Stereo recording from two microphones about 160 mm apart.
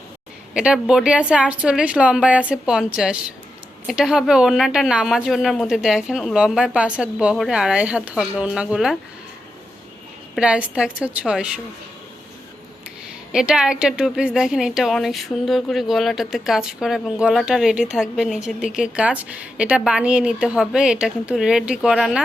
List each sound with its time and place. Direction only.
0.5 s a woman's voice: 5° right (ahead or behind)
10.3 s speech: 5° right (ahead or behind)
13.3 s a woman's voice: 5° right (ahead or behind)